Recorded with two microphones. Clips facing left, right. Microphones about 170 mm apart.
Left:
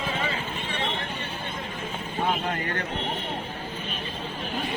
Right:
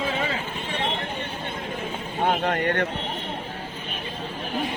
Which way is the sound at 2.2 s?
70° right (ahead or behind).